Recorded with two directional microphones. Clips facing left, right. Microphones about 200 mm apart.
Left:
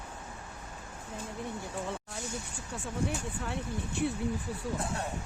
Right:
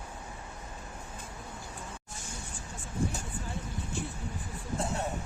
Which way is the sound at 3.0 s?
70° left (ahead or behind).